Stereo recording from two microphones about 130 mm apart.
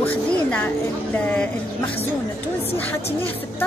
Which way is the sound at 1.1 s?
10° left (ahead or behind).